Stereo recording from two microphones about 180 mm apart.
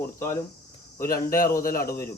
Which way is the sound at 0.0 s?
15° left (ahead or behind).